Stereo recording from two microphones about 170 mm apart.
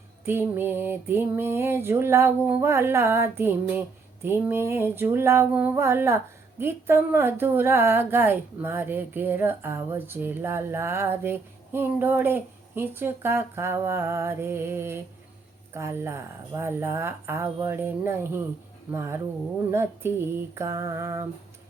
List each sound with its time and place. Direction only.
0.3 s speech: 15° right (ahead or behind)